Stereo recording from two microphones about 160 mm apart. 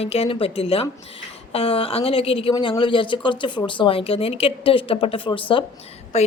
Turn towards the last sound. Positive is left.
turn(degrees=45)  # may be behind; listen again after turning